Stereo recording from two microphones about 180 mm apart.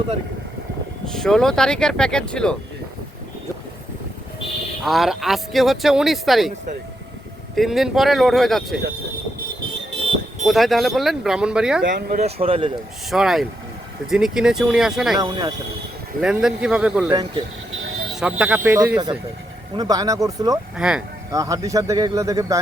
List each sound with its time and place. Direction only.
1.0 s speech: 5° left (ahead or behind)
4.9 s speech: centre (ahead or behind)
7.5 s speech: centre (ahead or behind)
10.4 s speech: centre (ahead or behind)
12.2 s speech: 30° right (ahead or behind)
13.1 s speech: centre (ahead or behind)
15.2 s speech: 20° right (ahead or behind)
16.2 s speech: 5° right (ahead or behind)
17.1 s speech: 20° right (ahead or behind)
18.1 s speech: 5° right (ahead or behind)
19.7 s speech: 20° right (ahead or behind)
20.7 s speech: 5° right (ahead or behind)
21.3 s speech: 20° right (ahead or behind)